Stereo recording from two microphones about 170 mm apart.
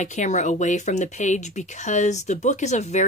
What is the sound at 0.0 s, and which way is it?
Speech, 45° left (ahead or behind).